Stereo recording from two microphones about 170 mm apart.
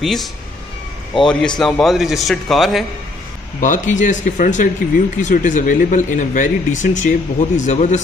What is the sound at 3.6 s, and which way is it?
Speech, 50° left (ahead or behind).